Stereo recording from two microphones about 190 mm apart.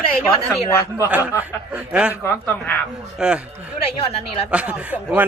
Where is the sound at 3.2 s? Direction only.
5° right (ahead or behind).